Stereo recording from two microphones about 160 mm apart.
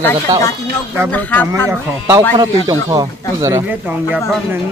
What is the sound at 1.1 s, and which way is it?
Speech, 10° left (ahead or behind).